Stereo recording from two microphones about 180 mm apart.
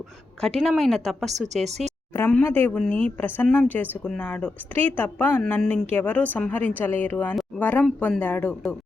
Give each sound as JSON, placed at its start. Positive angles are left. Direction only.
{"t": 0.4, "sound": "speech", "side_deg": 0}
{"t": 1.3, "sound": "speech", "side_deg": -40}
{"t": 2.1, "sound": "speech", "side_deg": 10}